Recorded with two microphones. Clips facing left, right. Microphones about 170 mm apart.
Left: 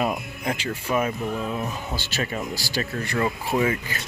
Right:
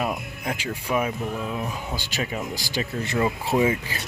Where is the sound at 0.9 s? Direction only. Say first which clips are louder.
Left 1 dB; 5° right (ahead or behind).